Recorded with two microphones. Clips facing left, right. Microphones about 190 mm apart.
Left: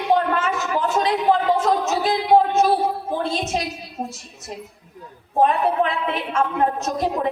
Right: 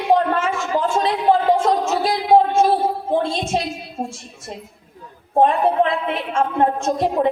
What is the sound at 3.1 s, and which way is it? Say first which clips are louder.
A woman's voice: right 4 dB; 30° right (ahead or behind).